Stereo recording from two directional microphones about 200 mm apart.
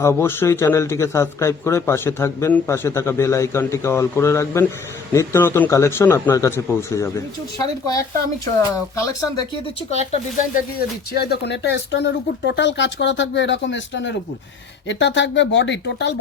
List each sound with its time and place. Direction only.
0.0 s speech: 15° left (ahead or behind)
8.7 s speech: 15° left (ahead or behind)
9.9 s speech: 35° left (ahead or behind)
10.8 s speech: 50° left (ahead or behind)